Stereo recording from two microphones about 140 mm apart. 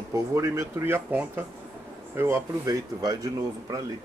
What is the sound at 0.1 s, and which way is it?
Speech, 20° right (ahead or behind).